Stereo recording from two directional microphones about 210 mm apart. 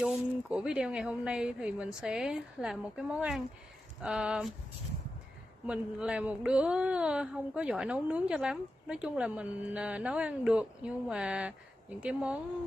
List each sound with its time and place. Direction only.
0.0 s speech: 5° right (ahead or behind)
5.7 s speech: 5° right (ahead or behind)